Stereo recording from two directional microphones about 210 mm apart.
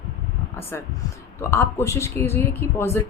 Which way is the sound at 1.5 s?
10° left (ahead or behind).